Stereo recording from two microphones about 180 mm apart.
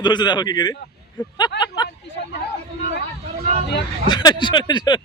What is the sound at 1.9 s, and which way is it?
Speech, 70° left (ahead or behind).